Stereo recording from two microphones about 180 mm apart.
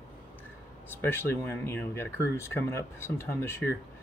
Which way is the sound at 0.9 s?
10° left (ahead or behind).